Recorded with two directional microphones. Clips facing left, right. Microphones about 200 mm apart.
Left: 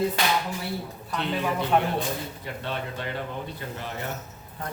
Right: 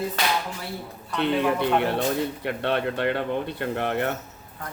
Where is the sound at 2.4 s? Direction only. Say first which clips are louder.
Right 8 dB; 65° right (ahead or behind).